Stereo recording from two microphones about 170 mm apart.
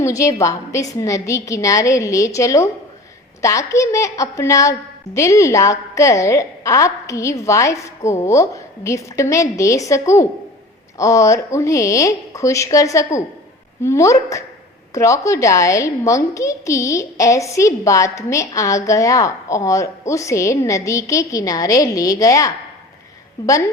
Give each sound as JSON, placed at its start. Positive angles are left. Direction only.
{"t": 0.0, "sound": "a woman's voice", "side_deg": 20}